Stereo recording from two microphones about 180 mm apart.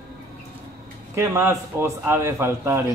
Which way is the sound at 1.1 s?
15° right (ahead or behind).